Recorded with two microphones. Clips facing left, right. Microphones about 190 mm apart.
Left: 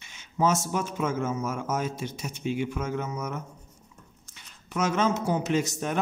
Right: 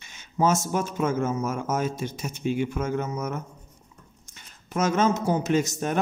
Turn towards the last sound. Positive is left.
turn(degrees=-45)  # may be behind; listen again after turning